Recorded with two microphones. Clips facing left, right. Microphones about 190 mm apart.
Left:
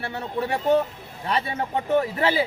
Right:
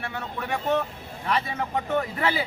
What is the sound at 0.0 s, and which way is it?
Speech, 30° left (ahead or behind).